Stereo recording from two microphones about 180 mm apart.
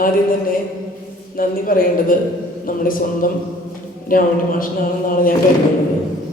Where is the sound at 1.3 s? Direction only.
50° left (ahead or behind).